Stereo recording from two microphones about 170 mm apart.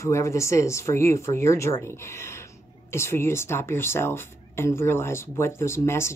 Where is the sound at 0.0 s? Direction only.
15° left (ahead or behind).